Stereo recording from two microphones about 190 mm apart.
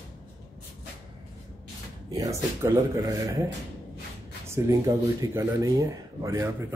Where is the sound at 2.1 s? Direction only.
15° right (ahead or behind).